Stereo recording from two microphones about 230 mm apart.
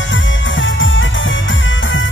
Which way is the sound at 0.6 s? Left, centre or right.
Left.